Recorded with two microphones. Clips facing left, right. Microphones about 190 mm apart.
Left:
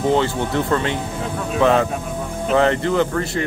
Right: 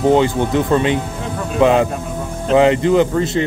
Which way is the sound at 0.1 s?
15° right (ahead or behind).